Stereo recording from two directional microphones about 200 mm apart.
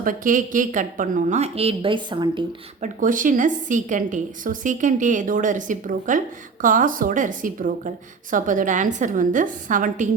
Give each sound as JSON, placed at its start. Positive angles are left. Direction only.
{"t": 0.0, "sound": "speech", "side_deg": -40}
{"t": 2.8, "sound": "speech", "side_deg": -40}